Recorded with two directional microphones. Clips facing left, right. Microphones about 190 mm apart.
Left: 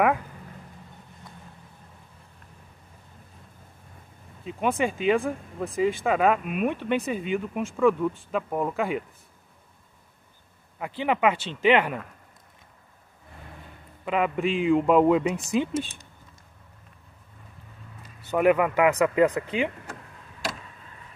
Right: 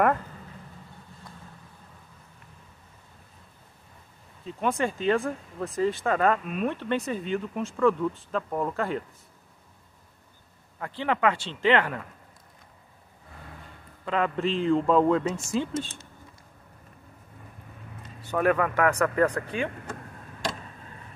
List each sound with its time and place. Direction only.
4.5 s speech: 15° left (ahead or behind)
10.8 s speech: 15° left (ahead or behind)
14.0 s speech: 10° left (ahead or behind)
18.3 s speech: 15° left (ahead or behind)